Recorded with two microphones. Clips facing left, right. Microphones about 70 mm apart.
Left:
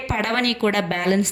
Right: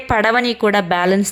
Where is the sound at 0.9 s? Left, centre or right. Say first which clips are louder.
Right 6 dB; right.